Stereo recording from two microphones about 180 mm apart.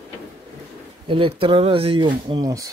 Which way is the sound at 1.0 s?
30° right (ahead or behind).